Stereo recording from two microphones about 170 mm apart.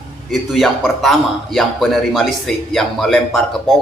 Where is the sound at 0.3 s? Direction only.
Centre (ahead or behind).